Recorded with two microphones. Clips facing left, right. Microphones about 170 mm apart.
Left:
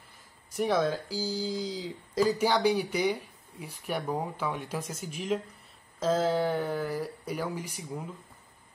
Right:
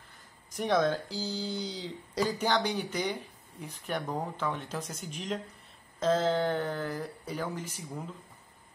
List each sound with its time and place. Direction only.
0.6 s speech: 5° left (ahead or behind)